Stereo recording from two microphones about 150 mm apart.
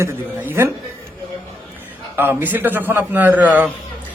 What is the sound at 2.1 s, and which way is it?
A man's voice, 15° right (ahead or behind).